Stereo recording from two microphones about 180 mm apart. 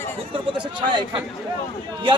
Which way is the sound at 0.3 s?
25° right (ahead or behind).